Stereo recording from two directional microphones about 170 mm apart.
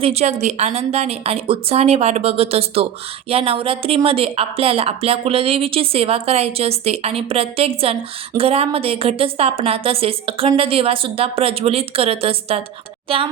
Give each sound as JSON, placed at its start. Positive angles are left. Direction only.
{"t": 0.0, "sound": "speech", "side_deg": -40}